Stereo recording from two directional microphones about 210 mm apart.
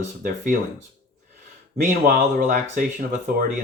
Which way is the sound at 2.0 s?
40° right (ahead or behind).